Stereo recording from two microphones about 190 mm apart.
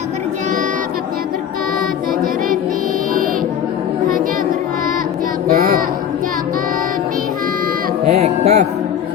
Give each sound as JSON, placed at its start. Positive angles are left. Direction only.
{"t": 5.5, "sound": "child singing", "side_deg": -50}
{"t": 8.0, "sound": "music", "side_deg": -35}